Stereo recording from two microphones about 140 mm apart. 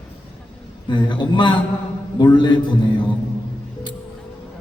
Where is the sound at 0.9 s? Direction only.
35° left (ahead or behind).